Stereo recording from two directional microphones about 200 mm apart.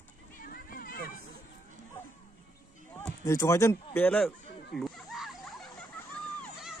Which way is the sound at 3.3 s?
15° left (ahead or behind).